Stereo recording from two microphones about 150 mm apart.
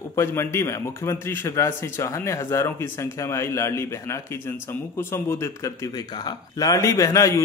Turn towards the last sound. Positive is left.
turn(degrees=20)  # may be behind; listen again after turning